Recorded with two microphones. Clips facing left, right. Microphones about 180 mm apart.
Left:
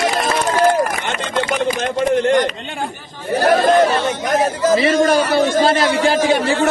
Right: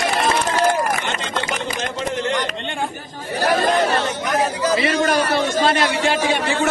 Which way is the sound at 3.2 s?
50° left (ahead or behind).